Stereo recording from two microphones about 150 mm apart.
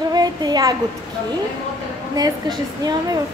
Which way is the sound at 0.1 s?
25° right (ahead or behind).